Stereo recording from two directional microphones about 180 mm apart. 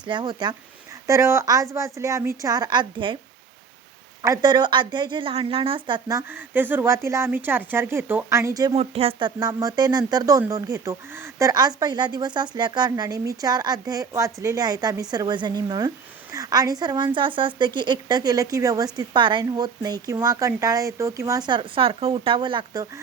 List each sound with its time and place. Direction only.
0.0 s a woman's voice: 25° right (ahead or behind)
4.2 s a woman's voice: 20° right (ahead or behind)
8.7 s speech: 35° right (ahead or behind)